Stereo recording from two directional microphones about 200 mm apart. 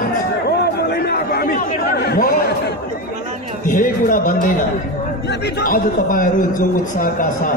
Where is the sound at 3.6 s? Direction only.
40° left (ahead or behind).